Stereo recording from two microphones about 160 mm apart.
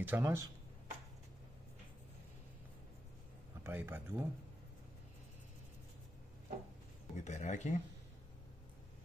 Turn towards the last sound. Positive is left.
turn(degrees=50)  # may be behind; listen again after turning